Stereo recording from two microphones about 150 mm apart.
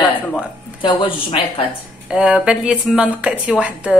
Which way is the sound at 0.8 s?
35° left (ahead or behind).